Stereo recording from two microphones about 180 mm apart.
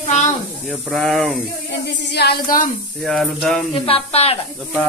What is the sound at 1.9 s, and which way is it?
Speech, 70° left (ahead or behind).